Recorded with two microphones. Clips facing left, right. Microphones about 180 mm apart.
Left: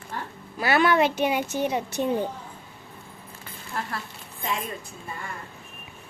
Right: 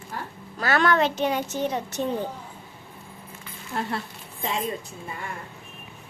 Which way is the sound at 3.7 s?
25° right (ahead or behind).